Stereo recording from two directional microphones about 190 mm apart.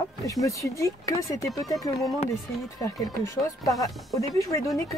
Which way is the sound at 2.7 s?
15° left (ahead or behind).